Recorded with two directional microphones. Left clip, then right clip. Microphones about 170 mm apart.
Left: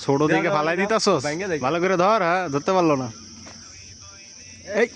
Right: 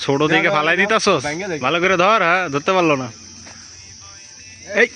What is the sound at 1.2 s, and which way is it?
Cricket, 45° right (ahead or behind).